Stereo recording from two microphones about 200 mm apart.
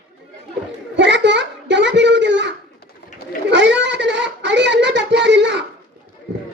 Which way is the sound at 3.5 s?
60° right (ahead or behind).